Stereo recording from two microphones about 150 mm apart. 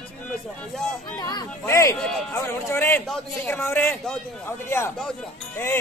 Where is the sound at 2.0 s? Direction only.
5° left (ahead or behind).